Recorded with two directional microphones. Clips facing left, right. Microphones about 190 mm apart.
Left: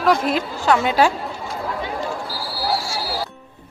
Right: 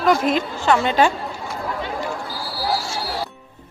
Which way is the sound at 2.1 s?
5° left (ahead or behind).